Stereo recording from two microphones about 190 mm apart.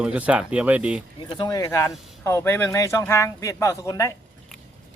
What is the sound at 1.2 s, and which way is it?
Speech, 25° left (ahead or behind).